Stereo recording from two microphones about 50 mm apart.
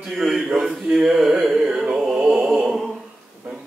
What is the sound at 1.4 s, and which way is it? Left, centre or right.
Music, centre.